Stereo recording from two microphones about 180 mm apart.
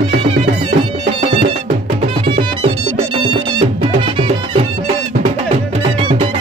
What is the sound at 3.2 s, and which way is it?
Music, 30° right (ahead or behind).